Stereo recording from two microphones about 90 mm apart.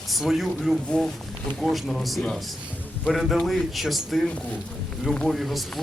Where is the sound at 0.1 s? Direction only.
Centre (ahead or behind).